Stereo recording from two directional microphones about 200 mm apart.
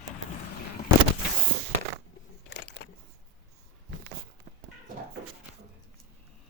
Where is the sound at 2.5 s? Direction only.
55° left (ahead or behind).